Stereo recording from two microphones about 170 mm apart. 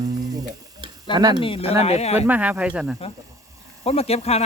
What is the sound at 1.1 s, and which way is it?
Speech, 25° right (ahead or behind).